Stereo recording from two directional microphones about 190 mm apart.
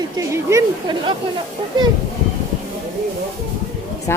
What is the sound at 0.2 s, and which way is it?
A woman's voice, 20° right (ahead or behind).